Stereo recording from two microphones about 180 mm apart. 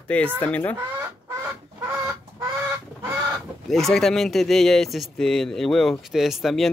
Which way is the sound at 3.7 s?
Centre (ahead or behind).